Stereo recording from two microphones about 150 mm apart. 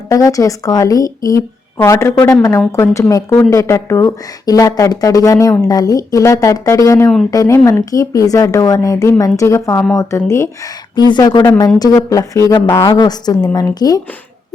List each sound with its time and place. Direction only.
0.1 s speech: 20° left (ahead or behind)
11.1 s speech: 30° left (ahead or behind)